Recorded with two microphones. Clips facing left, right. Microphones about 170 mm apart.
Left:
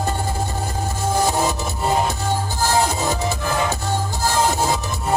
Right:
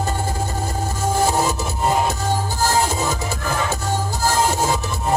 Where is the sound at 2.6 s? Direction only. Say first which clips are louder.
Left 1 dB; 40° right (ahead or behind).